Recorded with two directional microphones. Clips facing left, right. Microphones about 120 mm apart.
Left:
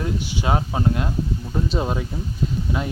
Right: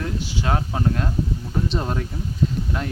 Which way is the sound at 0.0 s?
15° left (ahead or behind).